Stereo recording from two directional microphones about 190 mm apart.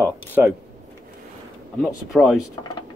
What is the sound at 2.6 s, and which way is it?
Speech, 20° left (ahead or behind).